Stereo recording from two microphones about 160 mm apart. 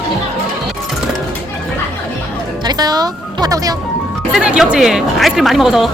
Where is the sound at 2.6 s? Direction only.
25° right (ahead or behind).